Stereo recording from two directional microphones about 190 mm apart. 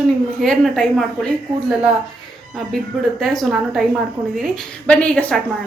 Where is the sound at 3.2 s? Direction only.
Centre (ahead or behind).